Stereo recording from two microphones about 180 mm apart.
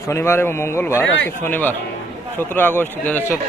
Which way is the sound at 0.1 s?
15° left (ahead or behind).